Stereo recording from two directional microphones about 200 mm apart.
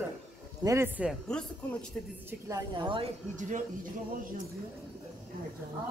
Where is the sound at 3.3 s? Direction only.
40° right (ahead or behind).